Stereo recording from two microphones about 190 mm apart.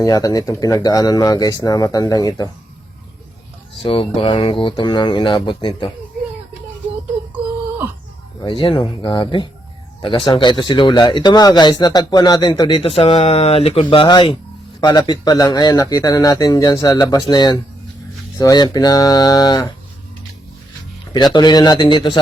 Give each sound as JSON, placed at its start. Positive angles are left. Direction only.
{"t": 0.0, "sound": "speech", "side_deg": 20}
{"t": 3.8, "sound": "speech", "side_deg": 30}
{"t": 8.4, "sound": "speech", "side_deg": 25}
{"t": 21.1, "sound": "speech", "side_deg": 20}